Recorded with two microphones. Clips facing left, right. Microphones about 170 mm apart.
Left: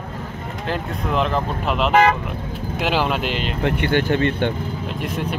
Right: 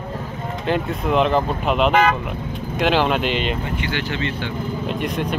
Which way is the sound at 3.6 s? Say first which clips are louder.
Left 6 dB; 65° left (ahead or behind).